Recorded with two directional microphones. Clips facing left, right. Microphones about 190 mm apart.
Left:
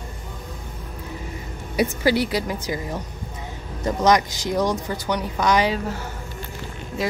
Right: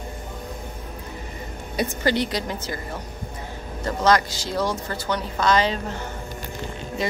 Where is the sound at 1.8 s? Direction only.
5° left (ahead or behind).